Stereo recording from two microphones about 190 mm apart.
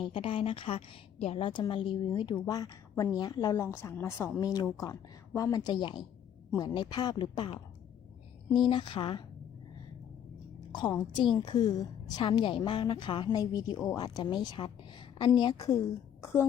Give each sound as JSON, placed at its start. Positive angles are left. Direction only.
{"t": 0.0, "sound": "a woman's voice", "side_deg": 25}
{"t": 8.7, "sound": "a woman's voice", "side_deg": 25}
{"t": 10.7, "sound": "a woman's voice", "side_deg": 20}